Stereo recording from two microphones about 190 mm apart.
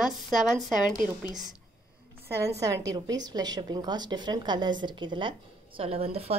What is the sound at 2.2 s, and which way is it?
A woman's voice, 15° right (ahead or behind).